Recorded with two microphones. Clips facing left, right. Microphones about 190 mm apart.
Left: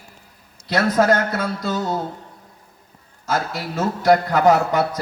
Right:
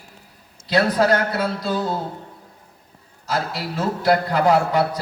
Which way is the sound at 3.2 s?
45° left (ahead or behind).